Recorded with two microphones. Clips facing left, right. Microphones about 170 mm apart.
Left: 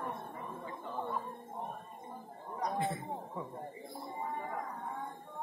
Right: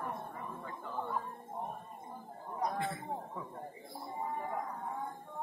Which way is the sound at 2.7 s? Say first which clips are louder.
Left 2 dB; 20° left (ahead or behind).